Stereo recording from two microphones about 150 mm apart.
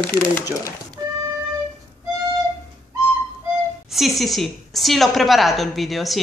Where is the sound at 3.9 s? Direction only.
Centre (ahead or behind).